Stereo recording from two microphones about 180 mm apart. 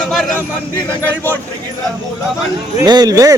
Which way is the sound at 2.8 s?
20° right (ahead or behind).